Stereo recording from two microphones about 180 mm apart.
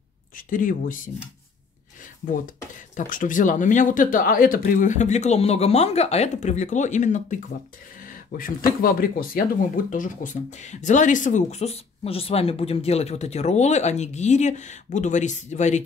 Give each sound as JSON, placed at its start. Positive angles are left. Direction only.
{"t": 0.5, "sound": "speech", "side_deg": 50}
{"t": 2.2, "sound": "speech", "side_deg": 50}